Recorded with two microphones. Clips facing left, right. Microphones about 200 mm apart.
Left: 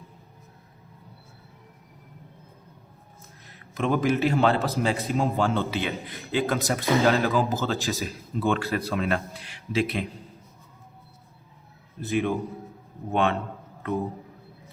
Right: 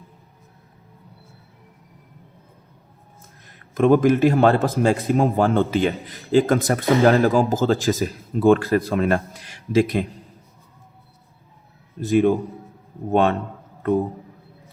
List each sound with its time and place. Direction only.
3.8 s a man's voice: 50° right (ahead or behind)
11.9 s a man's voice: 45° right (ahead or behind)